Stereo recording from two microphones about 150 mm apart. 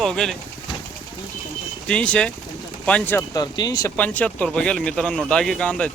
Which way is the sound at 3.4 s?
25° left (ahead or behind).